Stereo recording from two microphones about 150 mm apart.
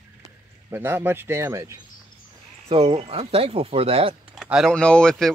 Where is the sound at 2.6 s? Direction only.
40° right (ahead or behind).